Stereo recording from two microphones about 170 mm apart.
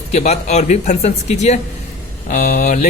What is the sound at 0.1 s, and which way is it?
A man's voice, 40° left (ahead or behind).